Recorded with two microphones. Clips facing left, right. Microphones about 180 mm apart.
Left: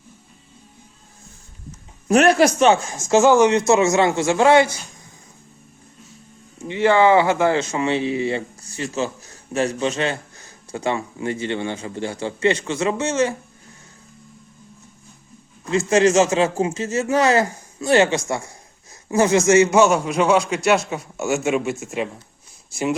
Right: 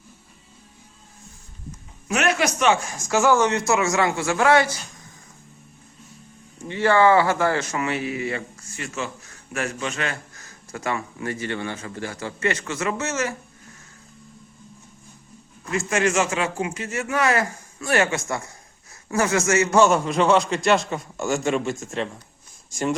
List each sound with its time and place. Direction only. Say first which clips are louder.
2.0 s speech: left 8 dB; 35° left (ahead or behind)
6.7 s speech: left 2 dB; 20° left (ahead or behind)
16.0 s speech: left 7 dB; 25° left (ahead or behind)
19.7 s a man's voice: left 2 dB; 5° left (ahead or behind)